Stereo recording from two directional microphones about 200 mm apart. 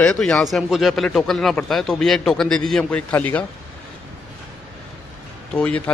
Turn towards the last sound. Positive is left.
turn(degrees=5)  # may be behind; listen again after turning